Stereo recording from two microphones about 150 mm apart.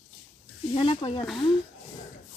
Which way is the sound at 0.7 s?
35° left (ahead or behind).